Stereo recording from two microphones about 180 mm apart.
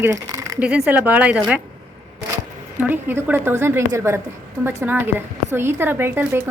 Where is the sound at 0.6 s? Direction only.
5° right (ahead or behind).